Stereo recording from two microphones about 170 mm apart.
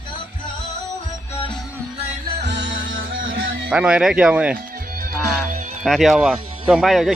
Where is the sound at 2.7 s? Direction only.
55° right (ahead or behind).